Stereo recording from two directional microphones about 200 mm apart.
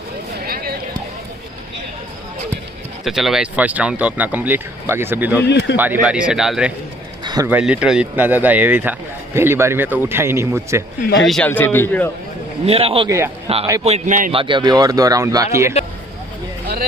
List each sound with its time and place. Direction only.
0.5 s a sound: 50° right (ahead or behind)
3.1 s speech: centre (ahead or behind)
5.4 s speech: 60° left (ahead or behind)
5.8 s speech: 10° right (ahead or behind)
11.2 s a man's voice: 5° left (ahead or behind)
12.6 s a man's voice: 30° right (ahead or behind)
14.3 s speech: 25° right (ahead or behind)